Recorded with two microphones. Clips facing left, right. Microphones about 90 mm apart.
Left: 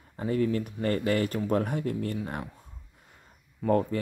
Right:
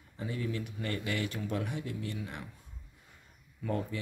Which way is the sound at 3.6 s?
45° left (ahead or behind).